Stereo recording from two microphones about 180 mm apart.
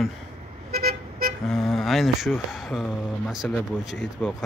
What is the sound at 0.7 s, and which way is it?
Vehicle, 60° right (ahead or behind).